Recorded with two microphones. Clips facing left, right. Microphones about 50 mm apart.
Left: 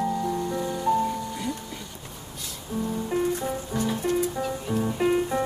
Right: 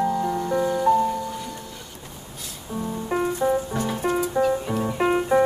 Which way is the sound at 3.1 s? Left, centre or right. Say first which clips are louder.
Right 6 dB; right.